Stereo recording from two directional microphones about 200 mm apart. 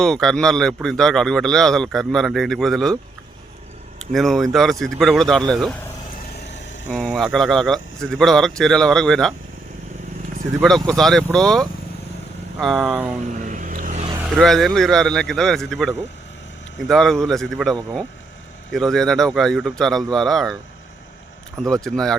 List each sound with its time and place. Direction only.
0.0 s a man's voice: centre (ahead or behind)
4.1 s a man's voice: centre (ahead or behind)
6.8 s a man's voice: 5° left (ahead or behind)
10.8 s a man's voice: centre (ahead or behind)
13.4 s vehicle: 40° right (ahead or behind)
14.3 s a man's voice: centre (ahead or behind)
21.6 s a man's voice: 5° left (ahead or behind)